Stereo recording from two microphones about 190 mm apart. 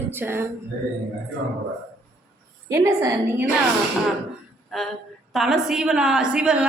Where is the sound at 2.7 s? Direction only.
15° right (ahead or behind).